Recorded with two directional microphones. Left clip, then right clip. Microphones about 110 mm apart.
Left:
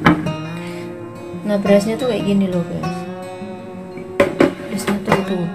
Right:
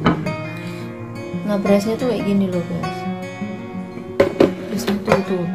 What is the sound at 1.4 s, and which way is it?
Speech, 30° right (ahead or behind).